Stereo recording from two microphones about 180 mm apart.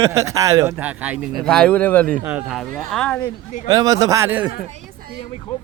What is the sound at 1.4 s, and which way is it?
Speech, 5° left (ahead or behind).